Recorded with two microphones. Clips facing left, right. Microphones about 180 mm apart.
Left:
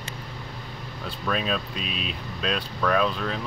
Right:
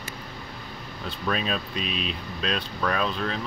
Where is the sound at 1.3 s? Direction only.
Centre (ahead or behind).